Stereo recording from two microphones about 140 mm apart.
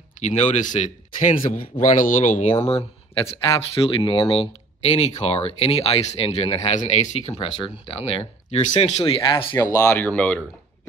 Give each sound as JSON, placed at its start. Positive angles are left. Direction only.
{"t": 0.2, "sound": "speech", "side_deg": 55}
{"t": 1.9, "sound": "speech", "side_deg": 65}
{"t": 3.3, "sound": "speech", "side_deg": 40}
{"t": 9.6, "sound": "speech", "side_deg": 25}